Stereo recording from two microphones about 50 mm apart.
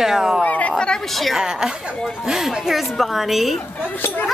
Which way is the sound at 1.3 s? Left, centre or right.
Centre.